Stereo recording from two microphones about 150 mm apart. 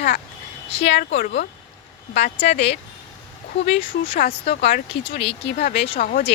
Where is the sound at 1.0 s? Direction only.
85° left.